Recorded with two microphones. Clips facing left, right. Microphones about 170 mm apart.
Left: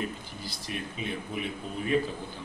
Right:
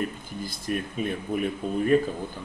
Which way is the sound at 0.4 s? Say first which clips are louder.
Right 9 dB; 50° right (ahead or behind).